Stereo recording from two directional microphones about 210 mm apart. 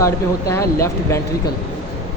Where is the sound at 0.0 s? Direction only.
15° left (ahead or behind).